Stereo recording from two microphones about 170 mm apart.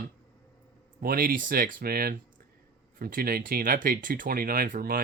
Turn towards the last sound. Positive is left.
turn(degrees=-55)  # may be behind; listen again after turning